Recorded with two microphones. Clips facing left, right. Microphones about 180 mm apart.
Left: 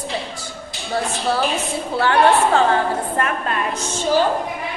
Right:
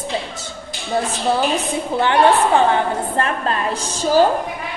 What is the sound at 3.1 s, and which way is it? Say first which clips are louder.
A woman's voice: right 1 dB; 30° right (ahead or behind).